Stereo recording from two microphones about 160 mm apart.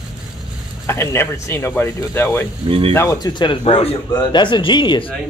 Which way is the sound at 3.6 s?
40° left (ahead or behind).